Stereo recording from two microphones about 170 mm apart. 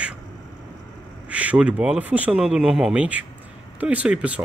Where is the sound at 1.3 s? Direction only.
10° right (ahead or behind).